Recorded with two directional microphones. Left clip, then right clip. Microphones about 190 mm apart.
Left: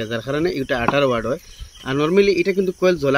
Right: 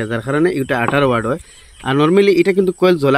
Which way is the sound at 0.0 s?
55° right (ahead or behind).